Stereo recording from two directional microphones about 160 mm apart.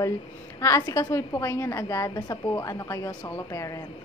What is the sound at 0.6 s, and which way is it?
A woman's voice, 20° left (ahead or behind).